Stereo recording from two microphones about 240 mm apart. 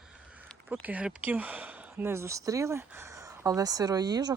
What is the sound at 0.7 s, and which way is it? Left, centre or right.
Speech, centre.